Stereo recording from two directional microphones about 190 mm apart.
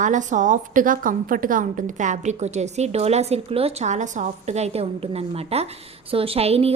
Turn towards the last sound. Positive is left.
turn(degrees=-30)  # may be behind; listen again after turning